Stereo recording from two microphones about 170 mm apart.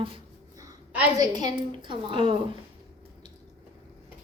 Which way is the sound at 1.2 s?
25° right (ahead or behind).